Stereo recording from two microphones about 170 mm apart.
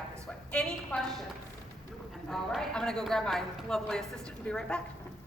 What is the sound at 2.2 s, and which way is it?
A woman's voice, centre (ahead or behind).